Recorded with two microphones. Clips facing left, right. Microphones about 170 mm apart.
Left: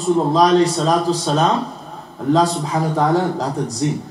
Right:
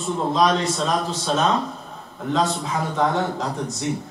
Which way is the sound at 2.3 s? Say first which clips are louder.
Left 5 dB; 35° left (ahead or behind).